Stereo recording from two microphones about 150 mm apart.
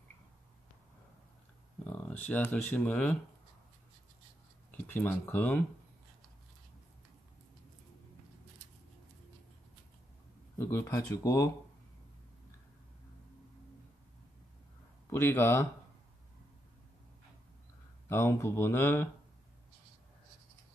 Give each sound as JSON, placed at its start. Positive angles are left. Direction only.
{"t": 1.9, "sound": "speech", "side_deg": 10}
{"t": 4.6, "sound": "speech", "side_deg": 10}
{"t": 10.6, "sound": "speech", "side_deg": 20}
{"t": 15.0, "sound": "speech", "side_deg": 15}
{"t": 18.0, "sound": "speech", "side_deg": 15}